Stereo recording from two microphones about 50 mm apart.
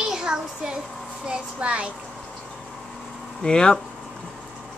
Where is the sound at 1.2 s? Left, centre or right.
Right.